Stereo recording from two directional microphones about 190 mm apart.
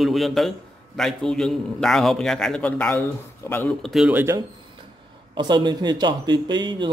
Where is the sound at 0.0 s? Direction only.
Centre (ahead or behind).